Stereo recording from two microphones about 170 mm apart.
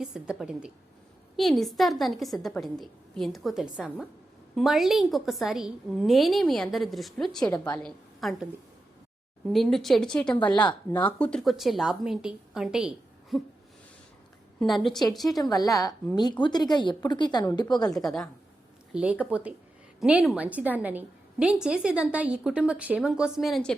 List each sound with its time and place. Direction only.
0.0 s a woman's voice: 5° right (ahead or behind)
9.5 s a woman's voice: centre (ahead or behind)
14.6 s a woman's voice: centre (ahead or behind)
15.3 s a woman's voice: 20° left (ahead or behind)
17.9 s a woman's voice: centre (ahead or behind)